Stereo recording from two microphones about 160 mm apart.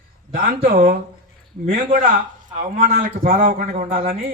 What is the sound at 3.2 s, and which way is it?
Speech, 60° right (ahead or behind).